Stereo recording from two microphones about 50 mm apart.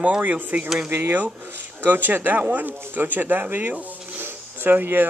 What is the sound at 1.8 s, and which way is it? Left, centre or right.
Speech, right.